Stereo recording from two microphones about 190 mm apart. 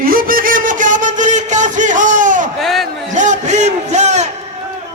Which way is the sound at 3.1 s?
40° right (ahead or behind).